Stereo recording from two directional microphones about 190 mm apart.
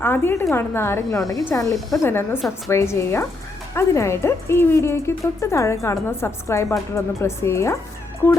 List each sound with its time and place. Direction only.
0.0 s a woman's voice: 10° left (ahead or behind)